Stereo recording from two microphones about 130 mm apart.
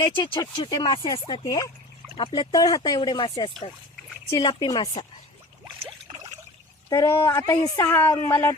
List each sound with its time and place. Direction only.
0.0 s speech: 35° left (ahead or behind)
2.1 s speech: 40° left (ahead or behind)
2.5 s speech: 30° left (ahead or behind)
6.9 s speech: 25° left (ahead or behind)